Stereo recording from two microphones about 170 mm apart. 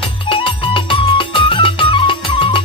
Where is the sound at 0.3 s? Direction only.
30° left (ahead or behind).